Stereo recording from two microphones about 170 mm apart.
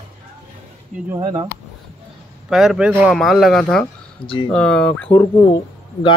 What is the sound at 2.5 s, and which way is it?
A man's voice, 5° right (ahead or behind).